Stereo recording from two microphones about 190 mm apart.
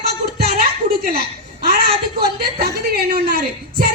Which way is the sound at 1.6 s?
55° right (ahead or behind).